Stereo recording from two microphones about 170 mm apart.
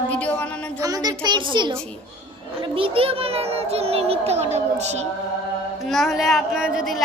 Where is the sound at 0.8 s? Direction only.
20° right (ahead or behind).